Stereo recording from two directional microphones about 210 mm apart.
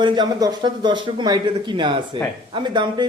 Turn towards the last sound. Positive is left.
turn(degrees=-20)  # may be behind; listen again after turning